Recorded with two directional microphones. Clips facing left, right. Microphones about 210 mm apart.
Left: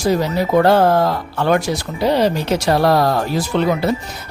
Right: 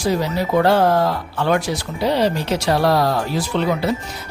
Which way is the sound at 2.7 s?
50° left (ahead or behind).